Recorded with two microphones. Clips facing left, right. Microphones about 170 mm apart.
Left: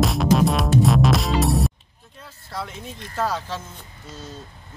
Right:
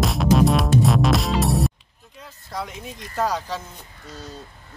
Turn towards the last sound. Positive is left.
turn(degrees=-15)  # may be behind; listen again after turning